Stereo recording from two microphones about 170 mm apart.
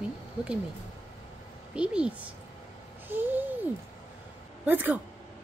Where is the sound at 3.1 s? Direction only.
10° right (ahead or behind).